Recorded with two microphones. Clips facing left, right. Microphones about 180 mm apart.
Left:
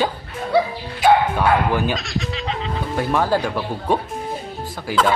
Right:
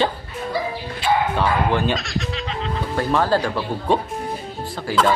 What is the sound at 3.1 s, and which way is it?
Speech, 15° left (ahead or behind).